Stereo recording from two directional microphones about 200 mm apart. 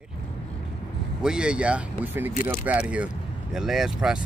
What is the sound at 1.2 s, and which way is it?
Speech, 5° right (ahead or behind).